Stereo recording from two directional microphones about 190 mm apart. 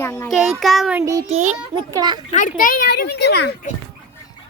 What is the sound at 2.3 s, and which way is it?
A child's voice, 45° left (ahead or behind).